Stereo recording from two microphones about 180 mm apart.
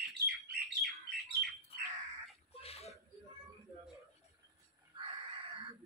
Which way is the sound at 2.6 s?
35° left (ahead or behind).